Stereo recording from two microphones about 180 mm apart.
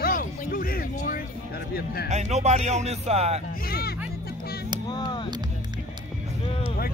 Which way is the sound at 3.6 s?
55° left (ahead or behind).